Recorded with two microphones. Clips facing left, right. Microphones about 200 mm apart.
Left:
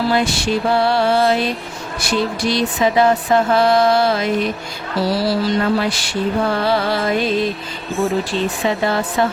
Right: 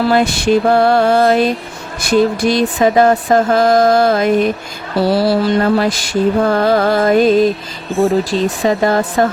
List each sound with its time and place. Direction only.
0.1 s mantra: 50° right (ahead or behind)
8.2 s speech: 40° right (ahead or behind)